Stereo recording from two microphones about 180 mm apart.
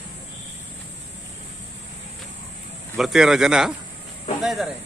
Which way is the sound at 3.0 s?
Centre (ahead or behind).